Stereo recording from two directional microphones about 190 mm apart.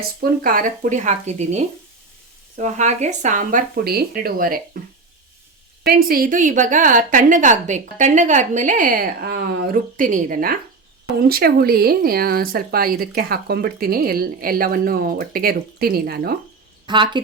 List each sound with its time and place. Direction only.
0.2 s speech: 45° right (ahead or behind)
5.8 s speech: 50° right (ahead or behind)
16.8 s a woman's voice: 25° right (ahead or behind)